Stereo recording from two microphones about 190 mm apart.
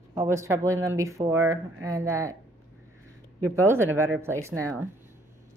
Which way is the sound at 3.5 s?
15° right (ahead or behind).